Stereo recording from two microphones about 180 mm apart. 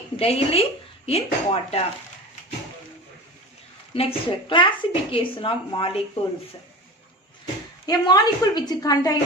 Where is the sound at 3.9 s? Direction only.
30° left (ahead or behind).